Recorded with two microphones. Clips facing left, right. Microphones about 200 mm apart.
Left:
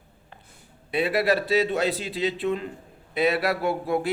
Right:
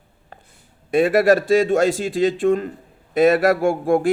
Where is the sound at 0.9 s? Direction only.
45° right (ahead or behind).